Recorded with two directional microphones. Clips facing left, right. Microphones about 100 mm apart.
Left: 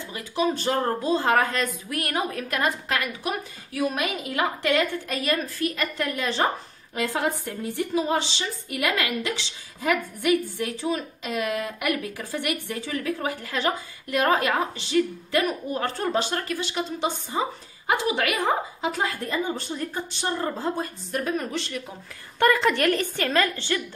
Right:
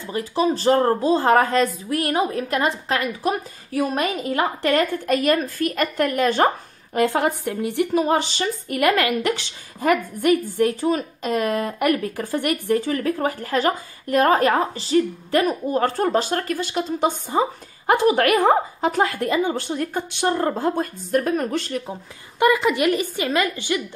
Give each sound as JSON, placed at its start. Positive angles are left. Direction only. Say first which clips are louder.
{"t": 0.0, "sound": "a woman's voice", "louder": "right 4 dB", "side_deg": -35}
{"t": 5.0, "sound": "speech", "louder": "right 7 dB", "side_deg": -50}
{"t": 22.4, "sound": "a woman's voice", "louder": "right 3 dB", "side_deg": -10}